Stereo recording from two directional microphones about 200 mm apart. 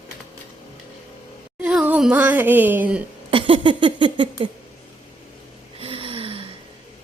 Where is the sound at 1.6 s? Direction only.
5° right (ahead or behind).